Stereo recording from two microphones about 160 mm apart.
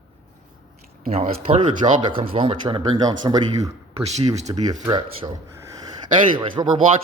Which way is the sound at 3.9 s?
40° right (ahead or behind).